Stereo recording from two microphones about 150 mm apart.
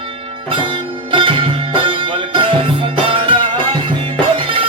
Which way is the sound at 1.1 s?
35° right (ahead or behind).